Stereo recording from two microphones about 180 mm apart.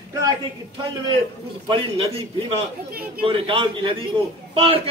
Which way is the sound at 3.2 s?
30° right (ahead or behind).